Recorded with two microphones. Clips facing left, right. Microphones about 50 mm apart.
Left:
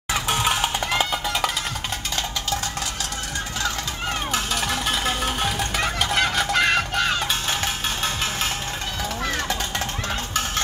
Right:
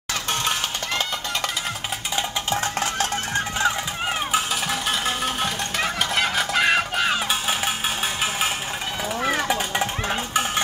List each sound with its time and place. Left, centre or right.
0.3 s music: centre
2.1 s music: right
4.3 s music: centre
9.2 s stir: centre